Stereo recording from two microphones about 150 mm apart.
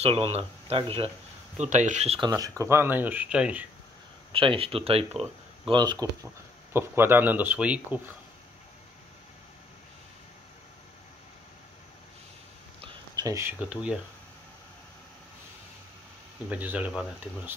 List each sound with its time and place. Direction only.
0.0 s speech: 40° right (ahead or behind)
1.6 s speech: 55° right (ahead or behind)
2.1 s speech: 25° right (ahead or behind); by 3.6 s 5° right (ahead or behind)
4.3 s speech: 35° right (ahead or behind)
5.7 s speech: 30° right (ahead or behind)
6.7 s speech: 15° right (ahead or behind)
12.8 s speech: 25° right (ahead or behind); by 13.9 s 10° right (ahead or behind)
16.4 s speech: 10° right (ahead or behind)